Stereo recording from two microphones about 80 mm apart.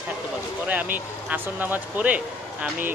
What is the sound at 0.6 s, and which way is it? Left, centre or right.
Speech, right.